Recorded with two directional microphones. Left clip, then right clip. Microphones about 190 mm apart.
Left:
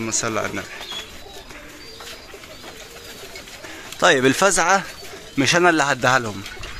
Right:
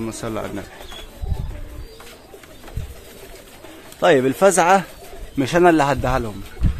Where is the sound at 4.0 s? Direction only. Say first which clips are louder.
Right 1 dB; 5° left (ahead or behind).